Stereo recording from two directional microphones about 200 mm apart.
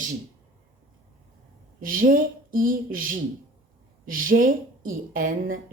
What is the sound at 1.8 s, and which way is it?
A woman's voice, 45° right (ahead or behind).